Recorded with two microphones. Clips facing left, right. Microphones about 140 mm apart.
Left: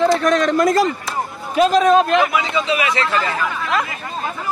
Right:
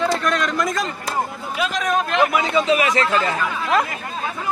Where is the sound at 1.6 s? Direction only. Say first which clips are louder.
Left 9 dB; 35° left (ahead or behind).